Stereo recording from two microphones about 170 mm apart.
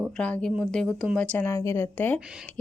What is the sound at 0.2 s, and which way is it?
Speech, 5° left (ahead or behind).